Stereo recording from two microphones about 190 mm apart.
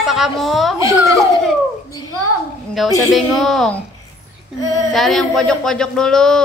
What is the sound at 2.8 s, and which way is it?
Speech, centre (ahead or behind).